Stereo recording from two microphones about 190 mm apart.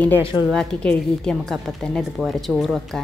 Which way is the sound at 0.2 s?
25° left (ahead or behind).